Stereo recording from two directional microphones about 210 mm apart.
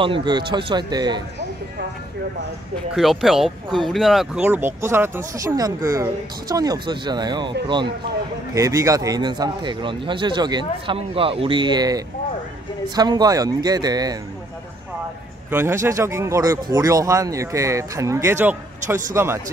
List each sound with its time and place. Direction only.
0.0 s a man's voice: 25° right (ahead or behind)
2.9 s a man's voice: centre (ahead or behind); by 14.1 s 20° right (ahead or behind)
15.5 s speech: 15° right (ahead or behind)